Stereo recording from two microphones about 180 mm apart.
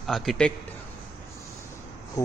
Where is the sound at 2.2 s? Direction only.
20° left (ahead or behind).